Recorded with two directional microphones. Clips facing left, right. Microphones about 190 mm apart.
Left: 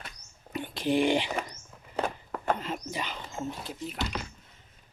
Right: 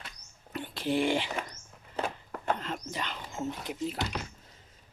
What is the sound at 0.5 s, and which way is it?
Whispering, 15° left (ahead or behind).